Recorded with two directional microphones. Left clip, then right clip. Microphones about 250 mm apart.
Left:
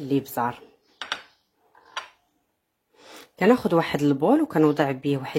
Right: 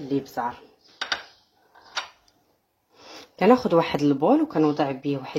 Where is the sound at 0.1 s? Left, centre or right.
Left.